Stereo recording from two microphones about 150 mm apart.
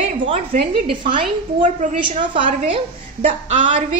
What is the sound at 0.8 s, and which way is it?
Speech, 35° right (ahead or behind).